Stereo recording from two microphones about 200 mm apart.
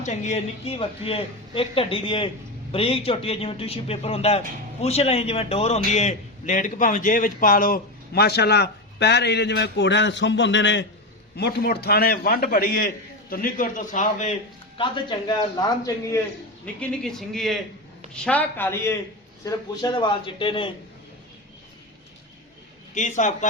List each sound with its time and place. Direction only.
0.0 s a man's voice: 35° left (ahead or behind); by 10.8 s 65° left (ahead or behind)
11.3 s a man's voice: 55° left (ahead or behind); by 14.3 s 40° left (ahead or behind)
15.3 s speech: 20° left (ahead or behind)
16.6 s a man's voice: 5° left (ahead or behind)
19.5 s speech: 20° left (ahead or behind)
23.0 s a man's voice: 35° left (ahead or behind)